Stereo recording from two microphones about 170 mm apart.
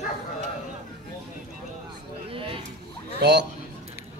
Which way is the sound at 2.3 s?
30° right (ahead or behind).